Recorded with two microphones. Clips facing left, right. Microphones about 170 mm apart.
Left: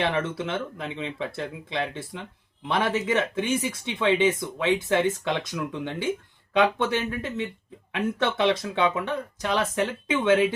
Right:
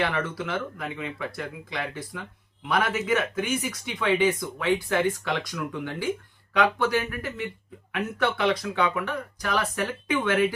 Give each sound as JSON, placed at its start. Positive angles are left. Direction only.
{"t": 0.0, "sound": "speech", "side_deg": 25}